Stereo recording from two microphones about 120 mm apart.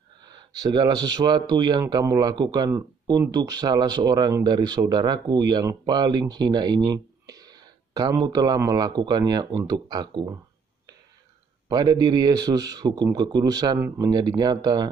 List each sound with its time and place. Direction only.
0.2 s speech: 35° right (ahead or behind)
11.7 s speech: 35° right (ahead or behind)
14.2 s speech: 35° right (ahead or behind)